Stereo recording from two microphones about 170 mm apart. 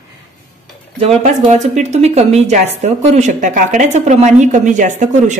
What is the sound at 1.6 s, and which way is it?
Speech, 45° right (ahead or behind).